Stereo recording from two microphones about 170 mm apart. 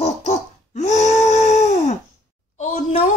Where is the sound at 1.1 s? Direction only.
40° left (ahead or behind).